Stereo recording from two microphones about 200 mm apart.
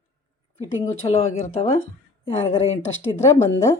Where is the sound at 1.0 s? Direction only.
30° left (ahead or behind).